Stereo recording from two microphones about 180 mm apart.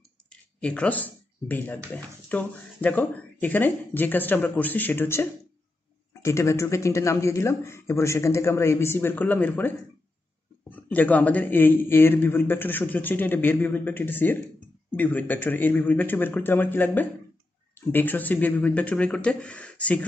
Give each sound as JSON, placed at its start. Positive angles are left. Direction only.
{"t": 0.3, "sound": "speech", "side_deg": 5}
{"t": 10.9, "sound": "speech", "side_deg": 10}